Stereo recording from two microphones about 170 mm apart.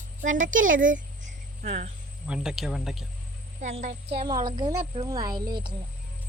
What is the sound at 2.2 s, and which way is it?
Speech, 5° right (ahead or behind).